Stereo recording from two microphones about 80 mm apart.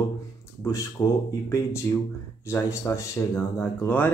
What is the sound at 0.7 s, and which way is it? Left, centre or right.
Speech, left.